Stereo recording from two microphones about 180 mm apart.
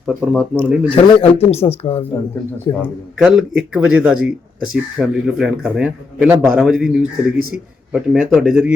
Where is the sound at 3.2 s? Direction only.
5° right (ahead or behind).